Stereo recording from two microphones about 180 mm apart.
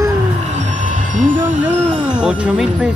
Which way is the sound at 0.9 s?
45° right (ahead or behind).